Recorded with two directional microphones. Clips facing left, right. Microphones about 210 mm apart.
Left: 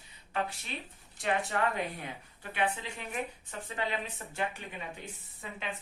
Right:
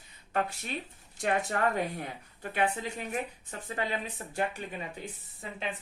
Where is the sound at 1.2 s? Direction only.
45° right (ahead or behind).